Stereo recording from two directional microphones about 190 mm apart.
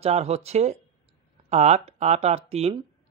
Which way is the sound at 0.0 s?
35° right (ahead or behind).